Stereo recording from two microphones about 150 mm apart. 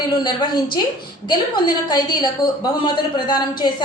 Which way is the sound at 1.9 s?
25° left (ahead or behind).